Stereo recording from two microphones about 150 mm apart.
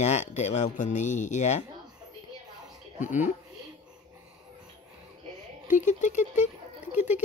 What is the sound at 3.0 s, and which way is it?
Speech, 55° left (ahead or behind).